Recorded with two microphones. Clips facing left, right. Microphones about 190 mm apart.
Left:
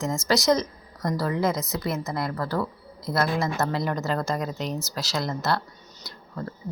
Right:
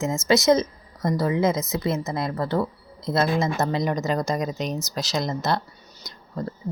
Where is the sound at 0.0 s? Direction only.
20° right (ahead or behind).